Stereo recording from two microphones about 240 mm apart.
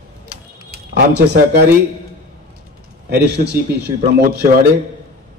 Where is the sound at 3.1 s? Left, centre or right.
Right.